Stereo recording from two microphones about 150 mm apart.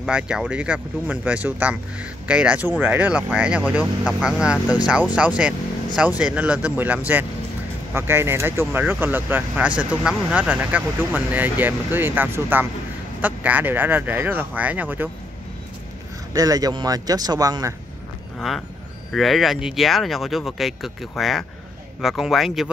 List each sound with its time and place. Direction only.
0.0 s speech: 5° right (ahead or behind)
16.3 s speech: 25° right (ahead or behind)
19.1 s speech: centre (ahead or behind)